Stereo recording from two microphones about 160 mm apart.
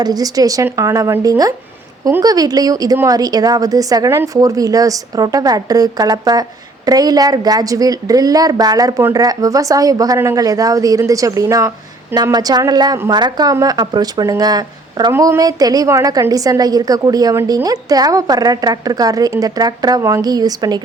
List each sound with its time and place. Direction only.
0.0 s a woman's voice: 25° right (ahead or behind)